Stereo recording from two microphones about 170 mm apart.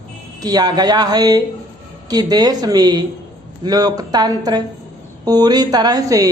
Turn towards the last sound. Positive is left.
turn(degrees=-20)  # may be behind; listen again after turning